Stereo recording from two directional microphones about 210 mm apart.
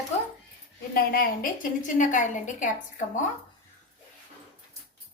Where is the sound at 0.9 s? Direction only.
45° left (ahead or behind).